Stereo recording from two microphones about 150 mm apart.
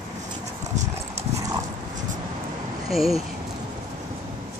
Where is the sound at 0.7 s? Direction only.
45° right (ahead or behind).